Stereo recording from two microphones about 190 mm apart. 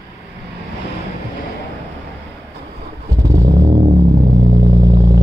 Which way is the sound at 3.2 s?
15° right (ahead or behind).